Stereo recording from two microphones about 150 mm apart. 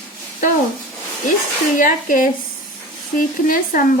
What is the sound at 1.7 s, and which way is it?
Speech, 60° left (ahead or behind).